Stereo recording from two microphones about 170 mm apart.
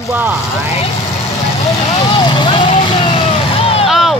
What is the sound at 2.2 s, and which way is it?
Vehicle, 30° left (ahead or behind).